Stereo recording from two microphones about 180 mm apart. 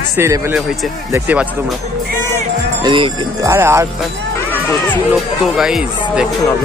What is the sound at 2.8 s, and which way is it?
Speech, 25° right (ahead or behind).